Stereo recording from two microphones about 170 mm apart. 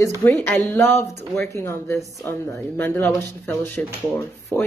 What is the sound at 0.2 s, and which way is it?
A woman's voice, 10° left (ahead or behind).